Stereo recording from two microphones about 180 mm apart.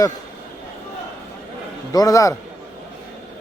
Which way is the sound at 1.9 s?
20° left (ahead or behind).